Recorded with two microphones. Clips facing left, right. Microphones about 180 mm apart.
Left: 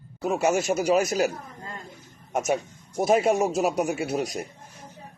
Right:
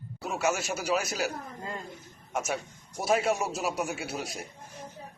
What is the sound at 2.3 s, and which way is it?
A man's voice, 50° left (ahead or behind).